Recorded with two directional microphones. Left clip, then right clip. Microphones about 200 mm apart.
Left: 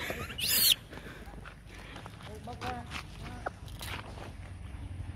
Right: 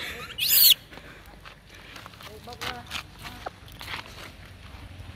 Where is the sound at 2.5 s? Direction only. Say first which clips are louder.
Right 6 dB; 40° right (ahead or behind).